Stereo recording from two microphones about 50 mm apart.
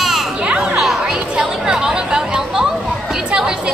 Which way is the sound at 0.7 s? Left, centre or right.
Centre.